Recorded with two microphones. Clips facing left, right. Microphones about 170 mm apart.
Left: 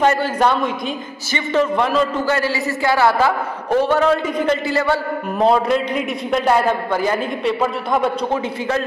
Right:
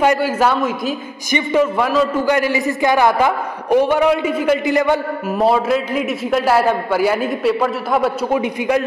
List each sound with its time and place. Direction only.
0.0 s a man's voice: 10° right (ahead or behind)
2.2 s a man's voice: 15° right (ahead or behind)
5.4 s a man's voice: 5° right (ahead or behind)
8.4 s a man's voice: 15° right (ahead or behind)